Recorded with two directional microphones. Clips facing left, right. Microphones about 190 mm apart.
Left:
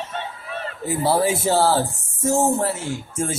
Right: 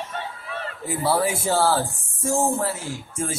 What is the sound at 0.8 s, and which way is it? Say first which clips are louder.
Speech: left 3 dB; 25° left (ahead or behind).